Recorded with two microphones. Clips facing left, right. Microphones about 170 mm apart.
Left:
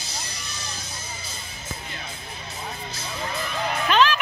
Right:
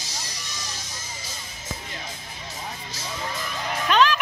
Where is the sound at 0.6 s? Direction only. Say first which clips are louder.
Left 1 dB; 60° left (ahead or behind).